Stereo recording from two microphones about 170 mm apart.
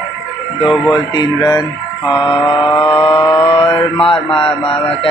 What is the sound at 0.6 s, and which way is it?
Speech, centre (ahead or behind).